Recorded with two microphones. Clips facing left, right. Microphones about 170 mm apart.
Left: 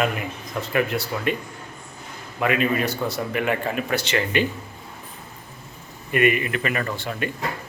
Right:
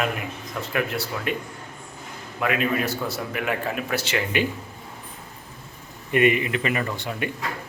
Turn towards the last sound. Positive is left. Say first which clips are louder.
# left 1 dB
turn(degrees=-15)  # may be behind; listen again after turning